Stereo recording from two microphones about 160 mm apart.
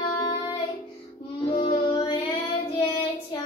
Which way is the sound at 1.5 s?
30° left (ahead or behind).